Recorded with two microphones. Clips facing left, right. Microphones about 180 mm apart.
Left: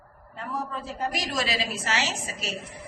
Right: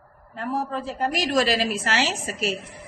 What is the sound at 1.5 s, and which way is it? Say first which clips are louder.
A woman's voice: right 5 dB; 60° right (ahead or behind).